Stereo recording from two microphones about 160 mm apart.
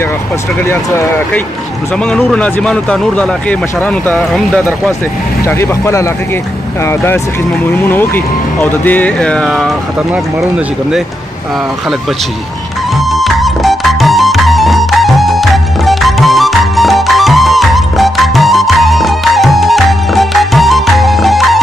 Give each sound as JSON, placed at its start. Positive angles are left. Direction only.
{"t": 0.7, "sound": "speech", "side_deg": 15}
{"t": 13.1, "sound": "music", "side_deg": 0}